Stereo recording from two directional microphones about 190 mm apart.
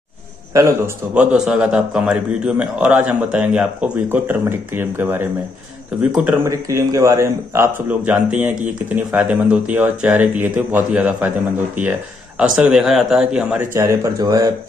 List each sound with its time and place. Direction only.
0.5 s a man's voice: 15° right (ahead or behind)
13.7 s a man's voice: 15° right (ahead or behind)